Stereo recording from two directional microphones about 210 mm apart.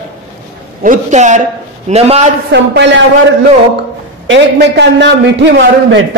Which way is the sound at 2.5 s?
55° right (ahead or behind).